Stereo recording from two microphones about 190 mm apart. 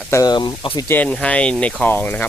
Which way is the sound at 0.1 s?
20° left (ahead or behind).